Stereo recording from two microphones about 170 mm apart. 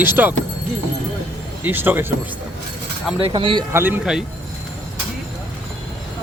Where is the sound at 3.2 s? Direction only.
30° right (ahead or behind).